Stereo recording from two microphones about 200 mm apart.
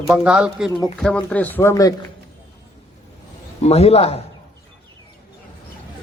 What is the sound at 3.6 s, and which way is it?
Speech, 30° left (ahead or behind).